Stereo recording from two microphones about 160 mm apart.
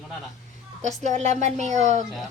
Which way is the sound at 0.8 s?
45° right (ahead or behind).